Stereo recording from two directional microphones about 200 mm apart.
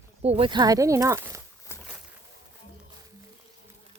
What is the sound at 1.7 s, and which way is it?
Boat, 10° left (ahead or behind).